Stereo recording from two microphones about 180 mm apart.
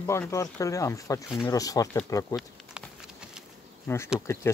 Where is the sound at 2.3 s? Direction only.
Centre (ahead or behind).